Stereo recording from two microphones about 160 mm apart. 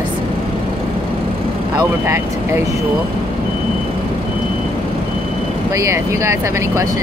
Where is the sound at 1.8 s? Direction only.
15° right (ahead or behind).